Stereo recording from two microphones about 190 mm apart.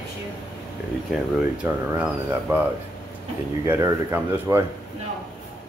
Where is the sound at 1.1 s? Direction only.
5° right (ahead or behind).